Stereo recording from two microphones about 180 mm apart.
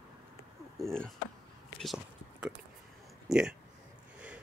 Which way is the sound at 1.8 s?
5° right (ahead or behind).